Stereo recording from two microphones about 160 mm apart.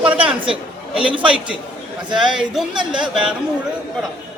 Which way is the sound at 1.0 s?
35° right (ahead or behind).